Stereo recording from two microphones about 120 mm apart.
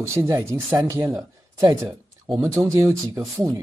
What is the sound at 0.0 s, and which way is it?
Speech, 20° right (ahead or behind).